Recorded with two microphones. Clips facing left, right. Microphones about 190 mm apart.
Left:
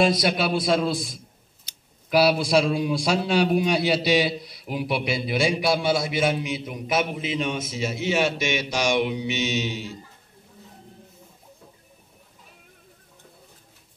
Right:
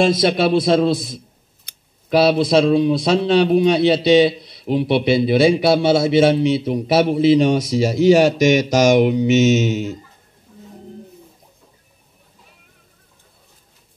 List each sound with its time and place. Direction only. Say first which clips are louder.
0.0 s a man's voice: right 6 dB; 25° right (ahead or behind)
1.7 s a sound: right 3 dB; 55° right (ahead or behind)
2.0 s a man's voice: right 5 dB; 25° right (ahead or behind); by 9.9 s 45° right (ahead or behind)